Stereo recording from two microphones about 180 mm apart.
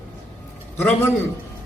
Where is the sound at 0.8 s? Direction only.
15° left (ahead or behind).